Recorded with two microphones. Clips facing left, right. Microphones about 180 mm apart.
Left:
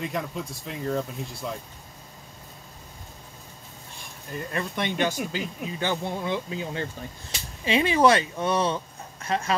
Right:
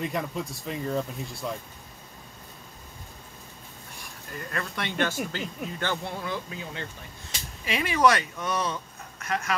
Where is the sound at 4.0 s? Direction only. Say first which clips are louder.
Left 4 dB; 20° left (ahead or behind).